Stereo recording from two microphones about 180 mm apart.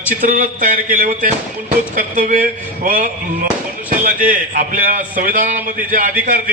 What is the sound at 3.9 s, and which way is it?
A man's voice, 50° right (ahead or behind).